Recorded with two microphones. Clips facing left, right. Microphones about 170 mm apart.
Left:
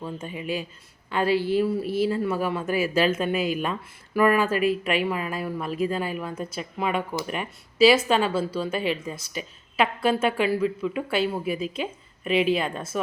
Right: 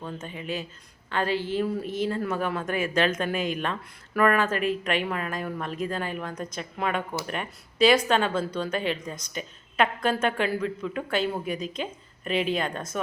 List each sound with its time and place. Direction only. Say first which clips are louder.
0.0 s speech: left 3 dB; 10° left (ahead or behind)